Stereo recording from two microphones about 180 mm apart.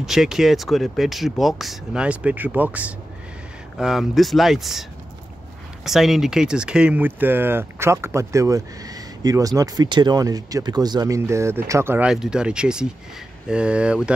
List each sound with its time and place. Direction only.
0.0 s speech: centre (ahead or behind)
5.9 s speech: centre (ahead or behind)